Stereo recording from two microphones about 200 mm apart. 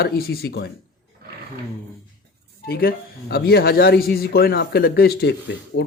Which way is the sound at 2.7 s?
50° left (ahead or behind).